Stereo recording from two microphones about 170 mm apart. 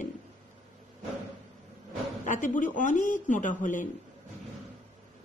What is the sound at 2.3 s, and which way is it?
Speech, 50° left (ahead or behind).